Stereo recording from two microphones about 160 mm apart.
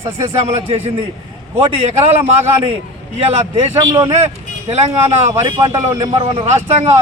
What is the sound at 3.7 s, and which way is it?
Speech, 25° right (ahead or behind).